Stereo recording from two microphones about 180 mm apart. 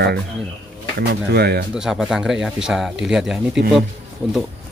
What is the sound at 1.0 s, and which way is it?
Speech, 60° right (ahead or behind).